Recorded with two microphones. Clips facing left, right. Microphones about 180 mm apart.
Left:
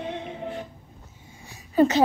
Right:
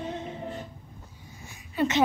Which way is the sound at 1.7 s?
40° left (ahead or behind).